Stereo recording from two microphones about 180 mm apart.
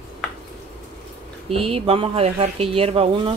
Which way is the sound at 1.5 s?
35° right (ahead or behind).